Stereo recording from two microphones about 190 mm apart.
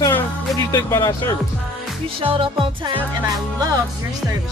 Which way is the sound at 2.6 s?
25° right (ahead or behind).